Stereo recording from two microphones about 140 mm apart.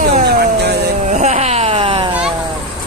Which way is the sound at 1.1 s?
55° right (ahead or behind).